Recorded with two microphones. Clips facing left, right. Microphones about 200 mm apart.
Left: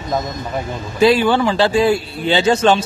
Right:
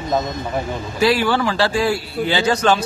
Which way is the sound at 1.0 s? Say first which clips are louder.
Left 4 dB; 20° left (ahead or behind).